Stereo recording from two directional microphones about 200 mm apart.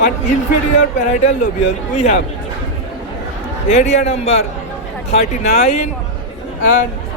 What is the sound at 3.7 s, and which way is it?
Speech, 35° left (ahead or behind).